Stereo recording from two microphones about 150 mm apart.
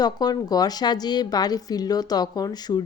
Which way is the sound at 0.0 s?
25° left (ahead or behind).